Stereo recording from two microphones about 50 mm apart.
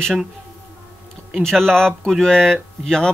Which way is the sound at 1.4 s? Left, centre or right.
Centre.